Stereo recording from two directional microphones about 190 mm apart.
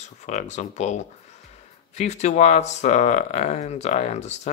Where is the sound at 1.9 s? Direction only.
35° left (ahead or behind).